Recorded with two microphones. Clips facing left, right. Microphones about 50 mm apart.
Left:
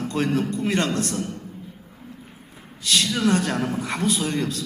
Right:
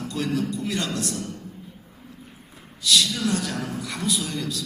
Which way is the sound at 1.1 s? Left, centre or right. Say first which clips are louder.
Left 4 dB; left.